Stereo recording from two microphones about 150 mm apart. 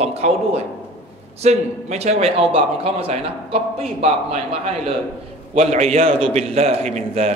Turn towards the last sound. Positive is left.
turn(degrees=-50)  # may be behind; listen again after turning